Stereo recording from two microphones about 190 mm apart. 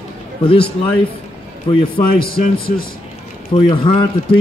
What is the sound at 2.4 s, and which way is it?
Speech, 35° left (ahead or behind).